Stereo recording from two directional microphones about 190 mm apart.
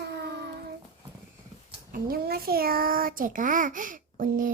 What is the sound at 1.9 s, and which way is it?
A child's voice, 50° right (ahead or behind).